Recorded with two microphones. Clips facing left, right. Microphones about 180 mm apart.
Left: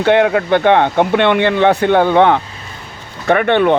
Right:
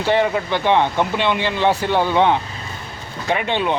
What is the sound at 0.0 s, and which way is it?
Speech, 65° left (ahead or behind).